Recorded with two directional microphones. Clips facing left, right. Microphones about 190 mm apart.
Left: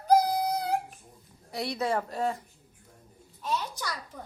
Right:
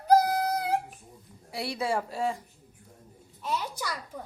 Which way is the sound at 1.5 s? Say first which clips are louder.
Left 1 dB; 5° right (ahead or behind).